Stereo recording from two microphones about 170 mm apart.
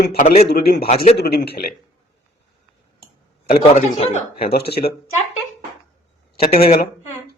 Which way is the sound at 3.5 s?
45° left (ahead or behind).